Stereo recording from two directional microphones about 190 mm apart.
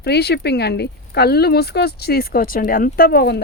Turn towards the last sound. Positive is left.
turn(degrees=60)  # may be behind; listen again after turning